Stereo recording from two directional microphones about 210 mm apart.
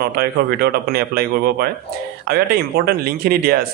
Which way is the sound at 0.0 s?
50° right (ahead or behind).